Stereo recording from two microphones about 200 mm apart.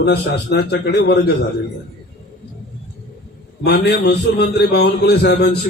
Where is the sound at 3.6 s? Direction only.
55° left (ahead or behind).